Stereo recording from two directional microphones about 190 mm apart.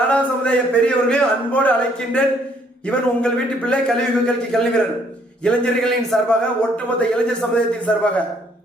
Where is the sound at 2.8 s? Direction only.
5° left (ahead or behind).